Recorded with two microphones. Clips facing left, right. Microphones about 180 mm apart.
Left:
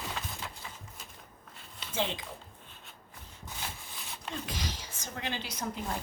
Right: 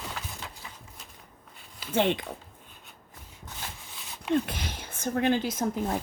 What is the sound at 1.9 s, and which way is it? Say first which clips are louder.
Speech: right 8 dB; 60° right (ahead or behind).